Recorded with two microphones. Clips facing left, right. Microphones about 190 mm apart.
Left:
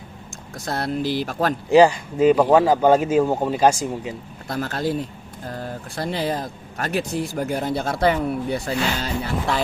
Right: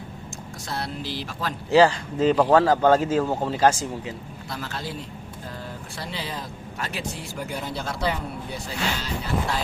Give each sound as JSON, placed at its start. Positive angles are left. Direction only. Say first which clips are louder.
{"t": 0.6, "sound": "speech", "louder": "left 8 dB", "side_deg": 50}
{"t": 1.7, "sound": "a man's voice", "louder": "left 3 dB", "side_deg": 15}
{"t": 4.4, "sound": "speech", "louder": "left 9 dB", "side_deg": 50}